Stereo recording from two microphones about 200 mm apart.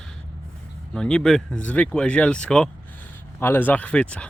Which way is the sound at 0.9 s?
5° left (ahead or behind).